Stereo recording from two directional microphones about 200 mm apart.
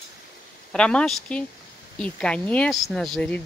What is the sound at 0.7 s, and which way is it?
Speech, 5° left (ahead or behind).